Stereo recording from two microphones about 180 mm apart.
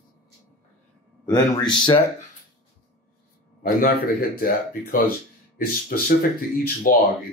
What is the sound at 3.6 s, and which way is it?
Speech, 50° left (ahead or behind).